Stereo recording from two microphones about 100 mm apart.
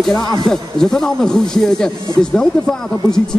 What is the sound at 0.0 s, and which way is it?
Speech, 5° left (ahead or behind).